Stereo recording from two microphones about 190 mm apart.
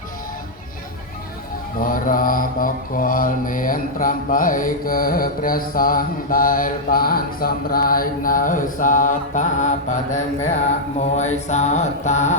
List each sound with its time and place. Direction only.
1.8 s mantra: 45° left (ahead or behind)